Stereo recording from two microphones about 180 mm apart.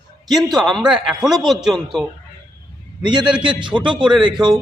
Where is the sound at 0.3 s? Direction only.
Centre (ahead or behind).